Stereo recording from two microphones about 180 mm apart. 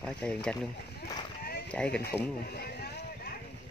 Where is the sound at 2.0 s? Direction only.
65° left (ahead or behind).